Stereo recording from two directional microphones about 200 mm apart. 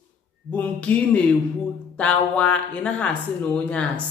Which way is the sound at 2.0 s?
5° left (ahead or behind).